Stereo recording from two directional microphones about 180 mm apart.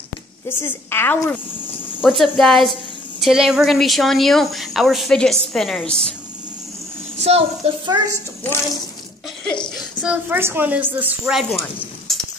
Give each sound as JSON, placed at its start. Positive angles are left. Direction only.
{"t": 0.5, "sound": "a woman's voice", "side_deg": 15}
{"t": 2.0, "sound": "speech", "side_deg": 0}
{"t": 7.2, "sound": "a woman's voice", "side_deg": -35}
{"t": 10.0, "sound": "a woman's voice", "side_deg": -10}